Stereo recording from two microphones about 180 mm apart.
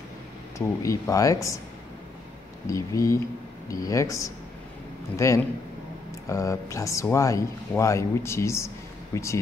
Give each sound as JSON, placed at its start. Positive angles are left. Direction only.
{"t": 0.6, "sound": "speech", "side_deg": 15}
{"t": 2.6, "sound": "speech", "side_deg": 20}